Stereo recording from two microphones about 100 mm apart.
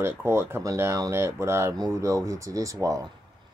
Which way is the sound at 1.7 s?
35° right (ahead or behind).